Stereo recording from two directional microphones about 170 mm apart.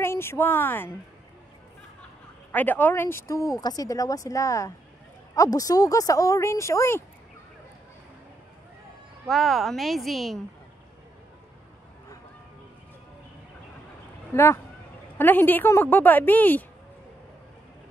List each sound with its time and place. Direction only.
0.0 s a woman's voice: 15° left (ahead or behind)
2.5 s speech: 10° left (ahead or behind)
9.3 s a woman's voice: centre (ahead or behind)
14.3 s a woman's voice: 15° left (ahead or behind)